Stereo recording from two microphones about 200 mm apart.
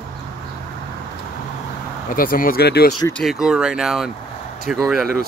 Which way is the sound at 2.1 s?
45° left (ahead or behind).